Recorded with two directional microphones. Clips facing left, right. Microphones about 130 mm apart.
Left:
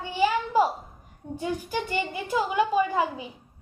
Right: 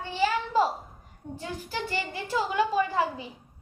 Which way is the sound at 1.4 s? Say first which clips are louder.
Left 5 dB; 15° left (ahead or behind).